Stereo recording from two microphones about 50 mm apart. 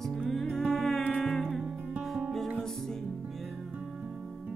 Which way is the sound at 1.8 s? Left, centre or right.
Right.